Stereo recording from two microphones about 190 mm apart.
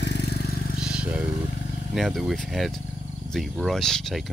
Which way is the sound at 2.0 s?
Centre (ahead or behind).